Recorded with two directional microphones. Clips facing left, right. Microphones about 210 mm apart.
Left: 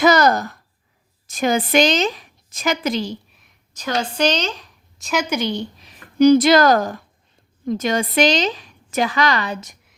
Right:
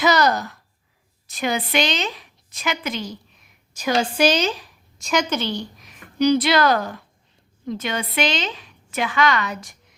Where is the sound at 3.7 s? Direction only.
10° right (ahead or behind); by 5.6 s 15° left (ahead or behind).